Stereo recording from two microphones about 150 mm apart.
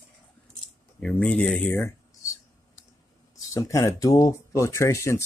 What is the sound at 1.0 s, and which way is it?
Speech, 10° left (ahead or behind).